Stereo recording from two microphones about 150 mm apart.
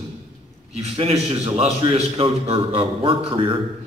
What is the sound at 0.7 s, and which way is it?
A man's voice, 45° right (ahead or behind).